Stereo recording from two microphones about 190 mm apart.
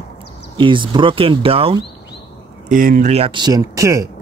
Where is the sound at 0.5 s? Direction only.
25° right (ahead or behind).